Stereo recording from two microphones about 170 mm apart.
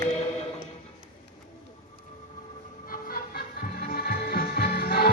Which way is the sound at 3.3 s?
60° left (ahead or behind).